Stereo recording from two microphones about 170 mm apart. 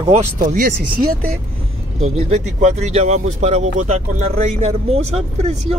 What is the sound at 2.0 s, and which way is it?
Speech, 40° right (ahead or behind).